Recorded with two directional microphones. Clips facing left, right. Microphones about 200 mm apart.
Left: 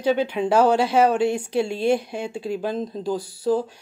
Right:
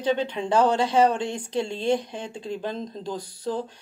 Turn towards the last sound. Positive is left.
turn(degrees=10)  # may be behind; listen again after turning